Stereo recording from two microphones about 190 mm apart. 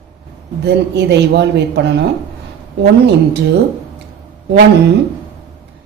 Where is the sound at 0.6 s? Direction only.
65° right (ahead or behind).